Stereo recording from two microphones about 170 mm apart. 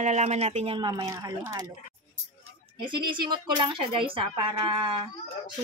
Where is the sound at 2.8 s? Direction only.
25° right (ahead or behind).